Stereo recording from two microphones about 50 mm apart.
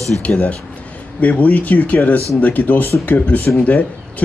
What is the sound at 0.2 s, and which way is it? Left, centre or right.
A man's voice, left.